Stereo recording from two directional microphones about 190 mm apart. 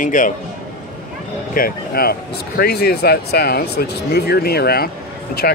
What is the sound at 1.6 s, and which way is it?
Speech, 50° left (ahead or behind).